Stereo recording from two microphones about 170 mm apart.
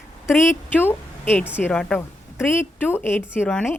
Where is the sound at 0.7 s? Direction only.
10° left (ahead or behind).